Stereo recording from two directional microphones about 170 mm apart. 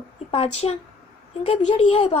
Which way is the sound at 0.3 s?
35° left (ahead or behind).